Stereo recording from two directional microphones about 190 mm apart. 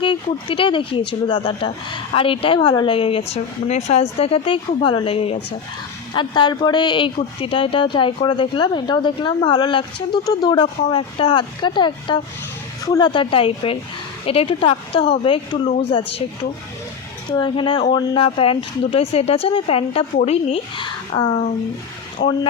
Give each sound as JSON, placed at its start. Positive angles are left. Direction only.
{"t": 0.0, "sound": "speech", "side_deg": 25}
{"t": 17.3, "sound": "speech", "side_deg": 25}
{"t": 22.2, "sound": "speech", "side_deg": 60}